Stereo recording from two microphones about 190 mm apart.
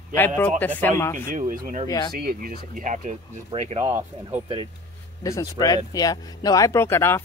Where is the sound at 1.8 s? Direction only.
20° left (ahead or behind).